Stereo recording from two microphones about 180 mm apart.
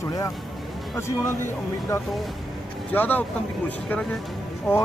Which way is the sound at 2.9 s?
10° left (ahead or behind).